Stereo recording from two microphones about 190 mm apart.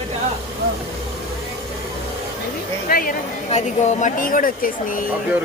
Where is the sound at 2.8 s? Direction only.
50° left (ahead or behind).